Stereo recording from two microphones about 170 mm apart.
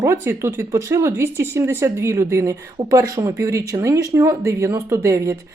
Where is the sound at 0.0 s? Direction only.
15° right (ahead or behind).